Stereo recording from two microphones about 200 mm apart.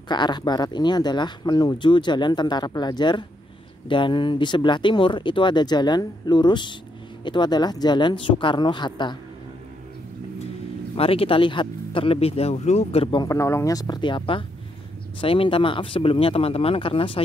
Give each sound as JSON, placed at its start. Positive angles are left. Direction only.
{"t": 0.1, "sound": "speech", "side_deg": 20}
{"t": 11.0, "sound": "speech", "side_deg": 30}